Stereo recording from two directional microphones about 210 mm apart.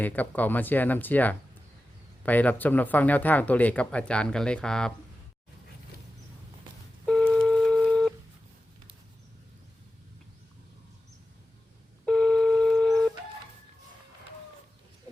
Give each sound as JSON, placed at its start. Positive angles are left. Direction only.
{"t": 0.0, "sound": "speech", "side_deg": 10}
{"t": 7.0, "sound": "telephone dialing", "side_deg": 5}
{"t": 12.0, "sound": "telephone dialing", "side_deg": 5}